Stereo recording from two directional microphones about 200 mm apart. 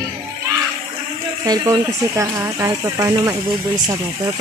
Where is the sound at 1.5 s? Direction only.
15° right (ahead or behind).